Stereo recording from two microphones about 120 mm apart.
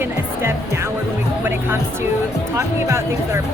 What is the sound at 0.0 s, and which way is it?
Music, 20° right (ahead or behind).